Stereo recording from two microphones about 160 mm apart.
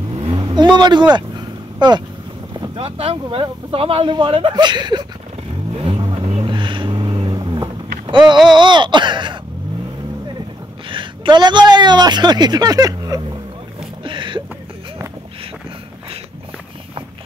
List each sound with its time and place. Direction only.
0.1 s vehicle: 30° right (ahead or behind)
0.7 s speech: 25° right (ahead or behind)
1.1 s vehicle: 25° right (ahead or behind)
2.7 s speech: 35° right (ahead or behind)
5.7 s vehicle: 35° right (ahead or behind)
6.4 s a sound: 30° right (ahead or behind)
8.5 s speech: 30° right (ahead or behind)
10.9 s a woman's voice: 30° right (ahead or behind)
14.0 s a sound: 30° right (ahead or behind)